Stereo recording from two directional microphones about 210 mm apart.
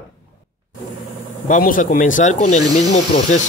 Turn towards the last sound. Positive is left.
turn(degrees=35)  # may be behind; listen again after turning